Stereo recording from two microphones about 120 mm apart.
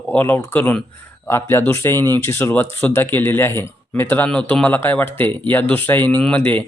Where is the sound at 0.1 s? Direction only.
15° left (ahead or behind).